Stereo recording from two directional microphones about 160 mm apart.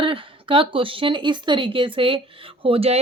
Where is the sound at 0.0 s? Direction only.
35° right (ahead or behind).